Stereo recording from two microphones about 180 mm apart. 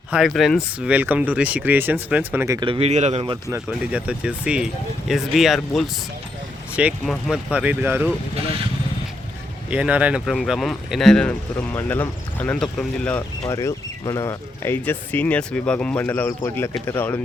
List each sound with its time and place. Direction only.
0.1 s speech: centre (ahead or behind)
2.6 s speech: 30° right (ahead or behind)
3.5 s speech: 5° right (ahead or behind)
9.6 s speech: 5° right (ahead or behind); by 17.2 s 10° left (ahead or behind)